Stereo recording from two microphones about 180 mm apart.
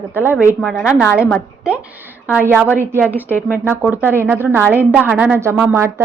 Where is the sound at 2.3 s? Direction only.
10° right (ahead or behind).